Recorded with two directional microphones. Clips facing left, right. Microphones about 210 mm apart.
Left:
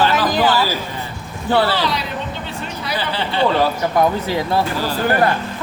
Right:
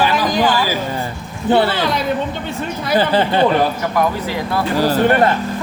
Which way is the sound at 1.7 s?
50° right (ahead or behind).